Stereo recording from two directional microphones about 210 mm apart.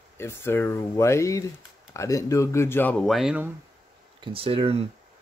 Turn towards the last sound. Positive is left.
turn(degrees=-30)  # may be behind; listen again after turning